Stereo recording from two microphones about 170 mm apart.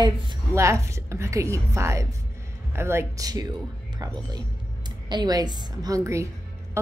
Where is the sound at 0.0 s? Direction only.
25° right (ahead or behind).